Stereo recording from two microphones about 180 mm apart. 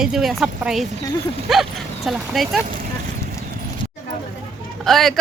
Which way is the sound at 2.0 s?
Centre (ahead or behind).